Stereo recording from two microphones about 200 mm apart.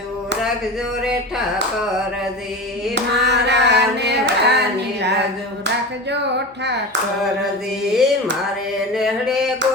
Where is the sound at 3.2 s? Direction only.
60° right (ahead or behind).